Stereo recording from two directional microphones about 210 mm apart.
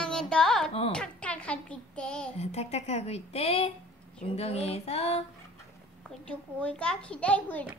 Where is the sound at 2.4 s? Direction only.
30° left (ahead or behind).